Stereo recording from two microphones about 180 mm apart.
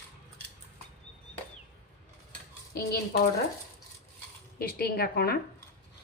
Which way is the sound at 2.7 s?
60° left (ahead or behind).